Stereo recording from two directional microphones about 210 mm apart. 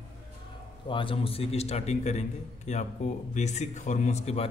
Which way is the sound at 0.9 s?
25° left (ahead or behind).